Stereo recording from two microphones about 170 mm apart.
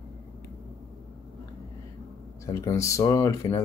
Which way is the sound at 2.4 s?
15° left (ahead or behind).